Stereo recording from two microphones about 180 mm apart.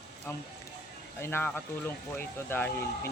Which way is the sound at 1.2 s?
10° left (ahead or behind).